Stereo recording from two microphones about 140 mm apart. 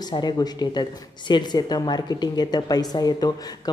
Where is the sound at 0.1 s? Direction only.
30° left (ahead or behind).